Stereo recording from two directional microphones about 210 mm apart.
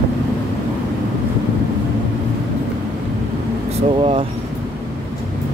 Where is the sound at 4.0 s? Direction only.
25° right (ahead or behind).